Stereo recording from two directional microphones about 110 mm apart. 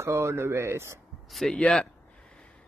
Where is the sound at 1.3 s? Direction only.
5° left (ahead or behind).